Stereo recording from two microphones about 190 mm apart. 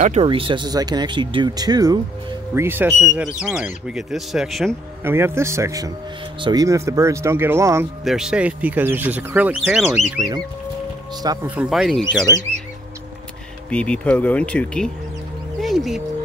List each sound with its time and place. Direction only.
0.2 s speech: 25° right (ahead or behind); by 4.7 s centre (ahead or behind)
5.0 s speech: 10° right (ahead or behind)
8.0 s speech: centre (ahead or behind)
11.4 s speech: 5° right (ahead or behind)
13.7 s speech: 5° left (ahead or behind)